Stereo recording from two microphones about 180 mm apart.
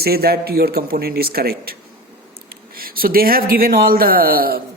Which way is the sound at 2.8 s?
55° right (ahead or behind).